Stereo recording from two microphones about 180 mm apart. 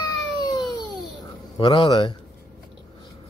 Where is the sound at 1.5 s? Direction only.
25° left (ahead or behind).